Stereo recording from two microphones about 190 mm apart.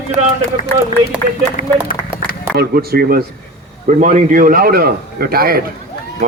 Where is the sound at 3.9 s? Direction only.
40° right (ahead or behind).